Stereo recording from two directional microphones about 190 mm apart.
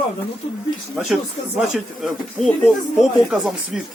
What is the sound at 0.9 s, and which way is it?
Speech, centre (ahead or behind).